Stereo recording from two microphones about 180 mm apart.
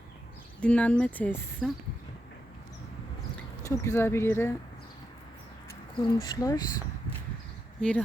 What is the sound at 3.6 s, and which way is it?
Speech, 15° left (ahead or behind).